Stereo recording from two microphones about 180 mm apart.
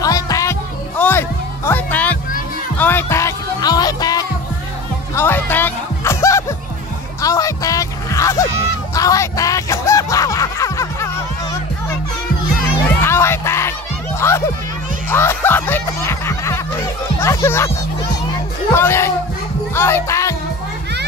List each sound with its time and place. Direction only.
0.0 s music: 20° left (ahead or behind)
13.0 s music: 15° left (ahead or behind)
18.8 s a sound: 15° left (ahead or behind)
19.7 s speech: 15° left (ahead or behind)